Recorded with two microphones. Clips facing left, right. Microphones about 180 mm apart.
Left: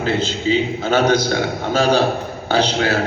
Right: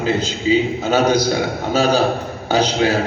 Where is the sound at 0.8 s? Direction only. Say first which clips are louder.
Even; 10° right (ahead or behind).